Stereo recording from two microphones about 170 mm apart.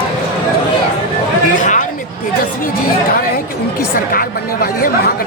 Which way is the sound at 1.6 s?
50° left (ahead or behind).